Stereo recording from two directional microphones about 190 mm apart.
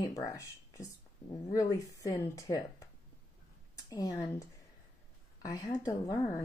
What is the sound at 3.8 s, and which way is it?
Speech, 20° left (ahead or behind).